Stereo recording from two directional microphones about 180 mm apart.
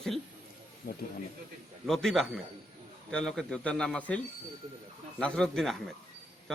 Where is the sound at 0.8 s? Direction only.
55° left (ahead or behind).